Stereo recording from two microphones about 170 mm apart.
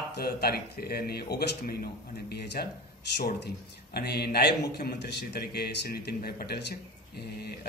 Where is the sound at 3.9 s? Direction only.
70° left (ahead or behind).